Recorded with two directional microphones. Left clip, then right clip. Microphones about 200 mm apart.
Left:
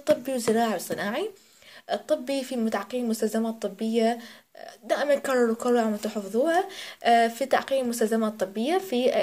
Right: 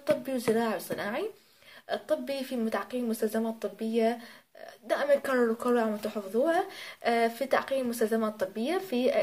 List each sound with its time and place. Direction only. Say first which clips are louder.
0.0 s a woman's voice: left 4 dB; 30° left (ahead or behind)